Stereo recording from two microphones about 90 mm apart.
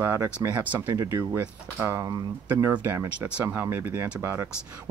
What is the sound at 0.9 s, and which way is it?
Speech, 45° right (ahead or behind).